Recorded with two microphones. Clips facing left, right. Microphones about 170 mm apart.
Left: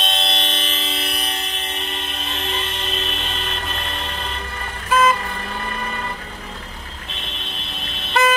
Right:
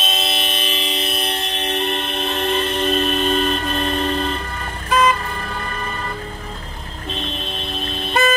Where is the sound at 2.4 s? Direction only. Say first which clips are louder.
Right 9 dB; 45° right (ahead or behind).